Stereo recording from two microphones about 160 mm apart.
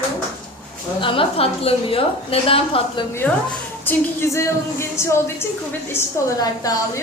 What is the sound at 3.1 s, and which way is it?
A woman's voice, 15° left (ahead or behind).